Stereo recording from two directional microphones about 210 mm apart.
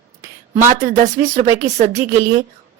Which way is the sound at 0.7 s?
35° right (ahead or behind).